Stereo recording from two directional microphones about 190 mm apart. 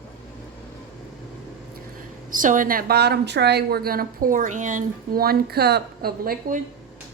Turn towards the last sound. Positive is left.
turn(degrees=-50)  # may be behind; listen again after turning